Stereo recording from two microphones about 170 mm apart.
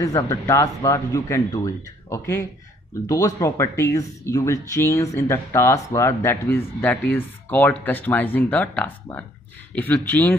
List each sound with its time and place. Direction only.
0.0 s speech: 20° left (ahead or behind)